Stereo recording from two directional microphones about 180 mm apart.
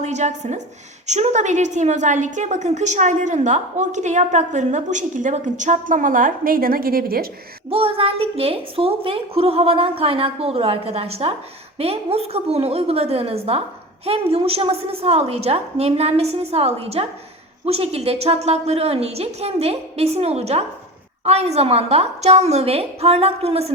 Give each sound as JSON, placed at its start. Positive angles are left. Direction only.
{"t": 0.0, "sound": "a woman's voice", "side_deg": -40}
{"t": 7.7, "sound": "a woman's voice", "side_deg": -30}